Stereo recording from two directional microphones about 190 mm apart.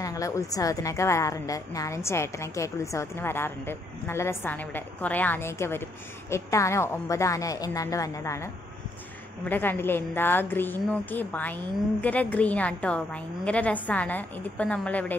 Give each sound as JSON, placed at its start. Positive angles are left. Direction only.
{"t": 0.0, "sound": "a woman's voice", "side_deg": 15}